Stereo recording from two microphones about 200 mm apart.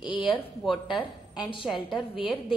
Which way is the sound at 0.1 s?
25° left (ahead or behind).